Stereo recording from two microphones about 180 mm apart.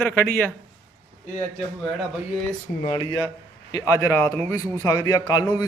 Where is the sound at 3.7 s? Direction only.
20° left (ahead or behind).